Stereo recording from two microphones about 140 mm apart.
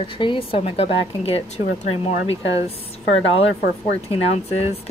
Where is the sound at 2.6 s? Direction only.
45° left (ahead or behind).